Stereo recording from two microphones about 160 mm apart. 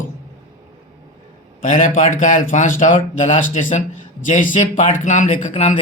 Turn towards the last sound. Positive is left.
turn(degrees=40)  # may be behind; listen again after turning